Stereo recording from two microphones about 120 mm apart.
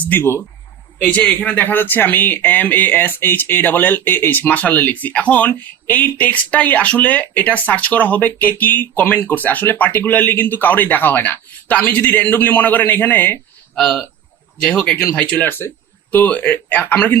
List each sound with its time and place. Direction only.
0.0 s speech: 20° left (ahead or behind)
1.0 s speech: 10° left (ahead or behind)